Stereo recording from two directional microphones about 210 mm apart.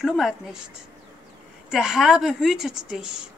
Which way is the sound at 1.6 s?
Centre (ahead or behind).